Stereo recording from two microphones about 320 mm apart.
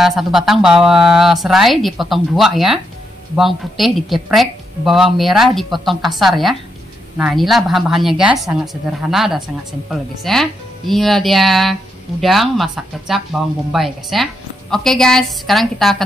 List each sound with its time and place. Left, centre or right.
0.0 s speech: centre